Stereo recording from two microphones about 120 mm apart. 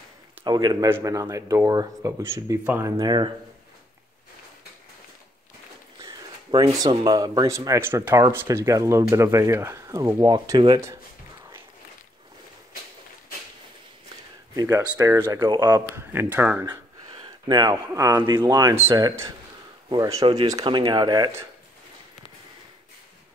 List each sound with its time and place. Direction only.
0.5 s speech: 35° right (ahead or behind)
0.8 s speech: 25° right (ahead or behind)
3.0 s speech: 40° right (ahead or behind)
6.0 s speech: 35° right (ahead or behind)
14.5 s speech: 30° right (ahead or behind); by 16.6 s 15° right (ahead or behind)
16.6 s speech: 40° right (ahead or behind)